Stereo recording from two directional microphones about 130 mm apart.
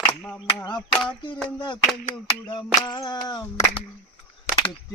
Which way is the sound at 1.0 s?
35° left (ahead or behind).